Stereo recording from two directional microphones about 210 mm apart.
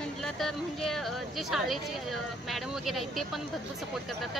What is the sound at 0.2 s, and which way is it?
Speech, centre (ahead or behind).